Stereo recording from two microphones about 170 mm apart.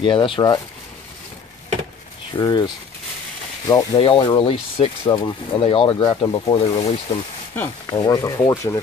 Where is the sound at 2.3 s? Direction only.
25° left (ahead or behind).